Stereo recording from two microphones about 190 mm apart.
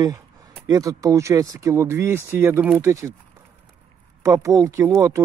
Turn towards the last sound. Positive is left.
turn(degrees=-15)  # may be behind; listen again after turning